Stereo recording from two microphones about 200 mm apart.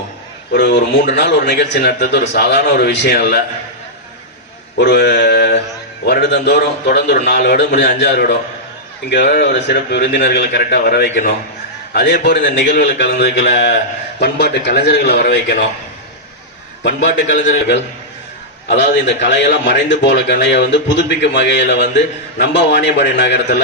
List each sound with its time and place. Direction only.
0.5 s a man's voice: 55° left (ahead or behind)
4.8 s mantra: 55° left (ahead or behind)
6.1 s a man's voice: 55° left (ahead or behind)
10.2 s a man's voice: 45° left (ahead or behind)
16.8 s a man's voice: 60° left (ahead or behind)